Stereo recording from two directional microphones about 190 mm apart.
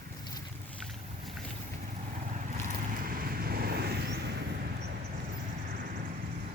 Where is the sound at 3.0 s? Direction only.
50° right (ahead or behind).